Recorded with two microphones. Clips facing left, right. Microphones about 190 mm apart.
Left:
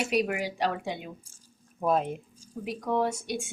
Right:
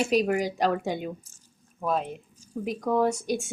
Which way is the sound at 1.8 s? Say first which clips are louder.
Left 2 dB; 5° left (ahead or behind).